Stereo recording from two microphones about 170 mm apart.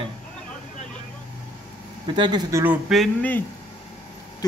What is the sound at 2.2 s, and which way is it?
Speech, 25° right (ahead or behind).